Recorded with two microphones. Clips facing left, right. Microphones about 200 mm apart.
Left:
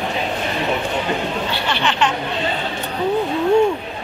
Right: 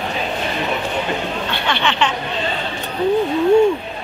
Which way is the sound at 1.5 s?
5° left (ahead or behind).